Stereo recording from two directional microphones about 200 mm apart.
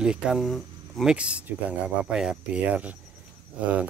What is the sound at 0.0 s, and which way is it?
Speech, 5° right (ahead or behind).